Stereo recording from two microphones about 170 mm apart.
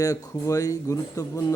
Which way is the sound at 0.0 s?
20° left (ahead or behind).